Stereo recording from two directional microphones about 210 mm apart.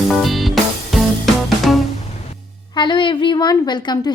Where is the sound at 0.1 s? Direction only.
Centre (ahead or behind).